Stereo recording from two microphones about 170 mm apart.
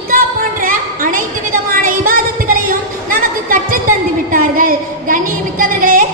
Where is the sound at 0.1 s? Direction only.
55° right (ahead or behind).